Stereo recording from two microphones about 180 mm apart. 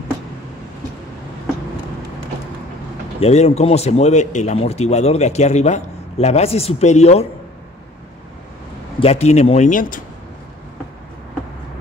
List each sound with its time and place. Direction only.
3.2 s speech: 35° left (ahead or behind)
9.0 s speech: 35° left (ahead or behind)